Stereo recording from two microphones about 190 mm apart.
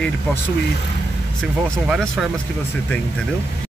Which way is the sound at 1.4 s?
Centre (ahead or behind).